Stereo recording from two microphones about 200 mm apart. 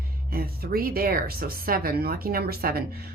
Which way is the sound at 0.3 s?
50° right (ahead or behind).